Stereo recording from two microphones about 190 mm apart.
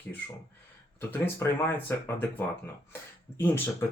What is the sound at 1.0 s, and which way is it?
Speech, 10° left (ahead or behind).